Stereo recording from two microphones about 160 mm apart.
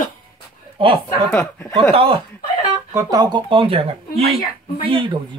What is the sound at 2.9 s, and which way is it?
Speech, 20° right (ahead or behind).